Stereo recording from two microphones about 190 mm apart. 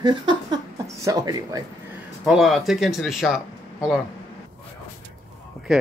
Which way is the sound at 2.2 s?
Centre (ahead or behind).